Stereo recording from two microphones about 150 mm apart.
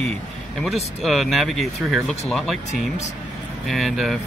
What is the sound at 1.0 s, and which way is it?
Speech, centre (ahead or behind).